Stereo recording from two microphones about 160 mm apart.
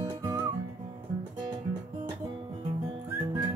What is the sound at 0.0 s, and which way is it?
Music, 25° right (ahead or behind).